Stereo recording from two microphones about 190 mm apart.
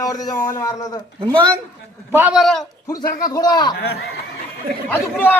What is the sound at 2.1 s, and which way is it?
Speech, 10° right (ahead or behind).